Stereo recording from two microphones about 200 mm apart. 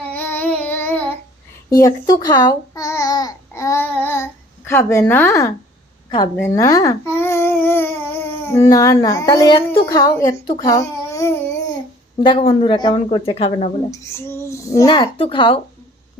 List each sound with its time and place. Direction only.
0.1 s a sound: 10° left (ahead or behind)
1.7 s babbling: 20° left (ahead or behind)
8.7 s a woman's voice: 15° left (ahead or behind)
12.2 s a woman's voice: 25° left (ahead or behind)
14.0 s a woman's voice: 15° left (ahead or behind)